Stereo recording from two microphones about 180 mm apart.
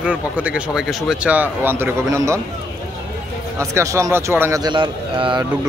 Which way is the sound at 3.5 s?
15° right (ahead or behind).